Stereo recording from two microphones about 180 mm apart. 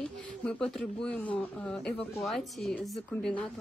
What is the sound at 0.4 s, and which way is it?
A woman's voice, 5° left (ahead or behind).